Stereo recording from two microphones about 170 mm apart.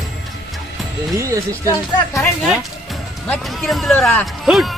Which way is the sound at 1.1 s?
15° right (ahead or behind).